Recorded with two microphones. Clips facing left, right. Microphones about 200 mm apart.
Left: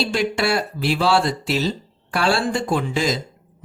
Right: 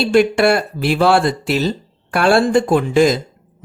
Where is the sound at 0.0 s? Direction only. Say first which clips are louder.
Right 8 dB; 55° right (ahead or behind).